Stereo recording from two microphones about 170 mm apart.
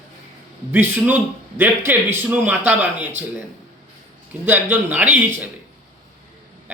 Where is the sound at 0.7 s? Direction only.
10° right (ahead or behind).